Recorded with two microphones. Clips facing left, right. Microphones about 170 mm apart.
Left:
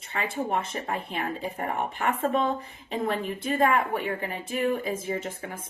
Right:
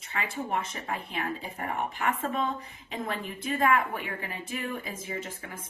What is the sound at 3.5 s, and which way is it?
Speech, 30° left (ahead or behind).